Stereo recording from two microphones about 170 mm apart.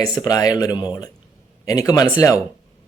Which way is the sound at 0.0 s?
25° left (ahead or behind).